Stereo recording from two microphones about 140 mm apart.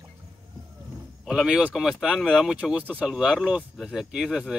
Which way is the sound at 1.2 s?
5° right (ahead or behind).